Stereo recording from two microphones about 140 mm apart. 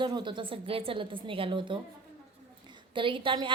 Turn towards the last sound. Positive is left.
turn(degrees=-35)  # may be behind; listen again after turning